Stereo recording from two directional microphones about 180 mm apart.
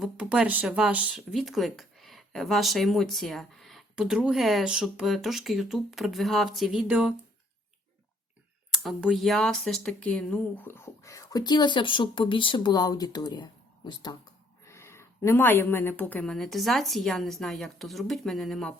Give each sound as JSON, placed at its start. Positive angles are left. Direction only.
{"t": 0.0, "sound": "speech", "side_deg": -5}
{"t": 8.7, "sound": "speech", "side_deg": 0}